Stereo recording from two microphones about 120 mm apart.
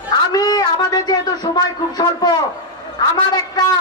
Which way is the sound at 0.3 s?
35° left (ahead or behind).